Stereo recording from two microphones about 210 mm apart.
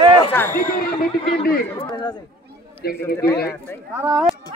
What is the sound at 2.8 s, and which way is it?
Speech, 45° left (ahead or behind).